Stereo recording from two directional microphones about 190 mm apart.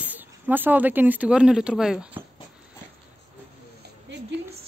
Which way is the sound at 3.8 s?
65° right (ahead or behind).